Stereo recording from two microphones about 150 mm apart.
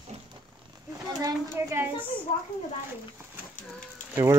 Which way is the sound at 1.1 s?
20° right (ahead or behind).